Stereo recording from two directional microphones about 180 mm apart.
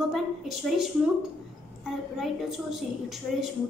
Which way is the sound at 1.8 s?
Centre (ahead or behind).